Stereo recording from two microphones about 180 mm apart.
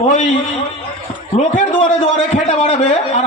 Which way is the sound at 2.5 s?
40° left (ahead or behind).